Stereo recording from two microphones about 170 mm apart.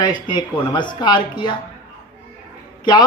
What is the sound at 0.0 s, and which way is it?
Speech, 25° left (ahead or behind).